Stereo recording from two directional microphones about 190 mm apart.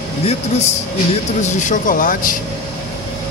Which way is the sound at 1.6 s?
45° left (ahead or behind).